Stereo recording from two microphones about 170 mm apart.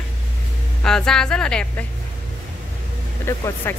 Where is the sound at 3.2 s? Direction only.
15° left (ahead or behind).